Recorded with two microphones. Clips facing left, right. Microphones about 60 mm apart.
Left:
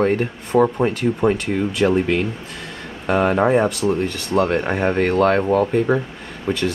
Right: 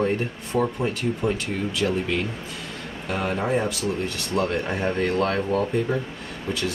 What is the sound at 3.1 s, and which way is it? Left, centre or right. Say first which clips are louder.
Speech: left 9 dB; left.